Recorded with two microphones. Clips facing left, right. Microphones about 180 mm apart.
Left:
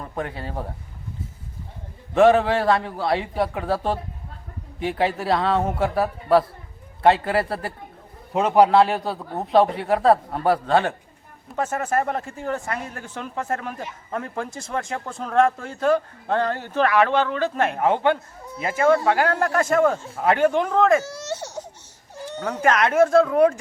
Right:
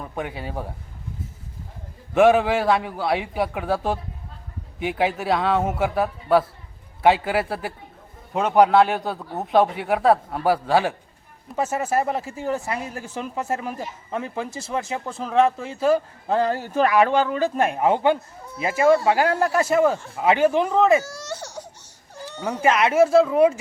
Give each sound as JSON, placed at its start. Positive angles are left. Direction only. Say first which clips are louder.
{"t": 0.0, "sound": "a man's voice", "louder": "even", "side_deg": -5}
{"t": 2.1, "sound": "a man's voice", "louder": "even", "side_deg": -5}
{"t": 21.0, "sound": "baby cry", "louder": "left 3 dB", "side_deg": 25}
{"t": 22.4, "sound": "speech", "louder": "even", "side_deg": -10}